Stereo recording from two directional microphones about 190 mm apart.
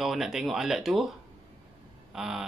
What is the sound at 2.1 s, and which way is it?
Speech, centre (ahead or behind).